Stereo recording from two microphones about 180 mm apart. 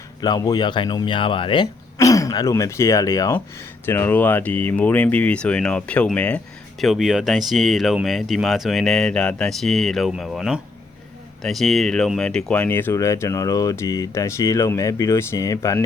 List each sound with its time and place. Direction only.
0.2 s speech: 20° left (ahead or behind)